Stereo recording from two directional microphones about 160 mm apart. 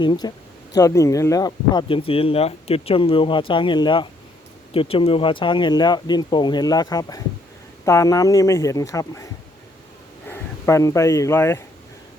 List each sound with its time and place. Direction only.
0.0 s speech: 25° left (ahead or behind)